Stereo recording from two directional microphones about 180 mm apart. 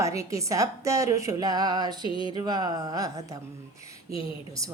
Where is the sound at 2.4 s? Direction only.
20° right (ahead or behind).